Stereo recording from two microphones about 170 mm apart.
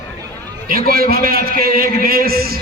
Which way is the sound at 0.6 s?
60° right (ahead or behind).